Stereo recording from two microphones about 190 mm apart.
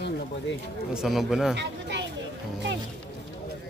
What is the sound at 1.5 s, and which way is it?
Speech, 65° right (ahead or behind).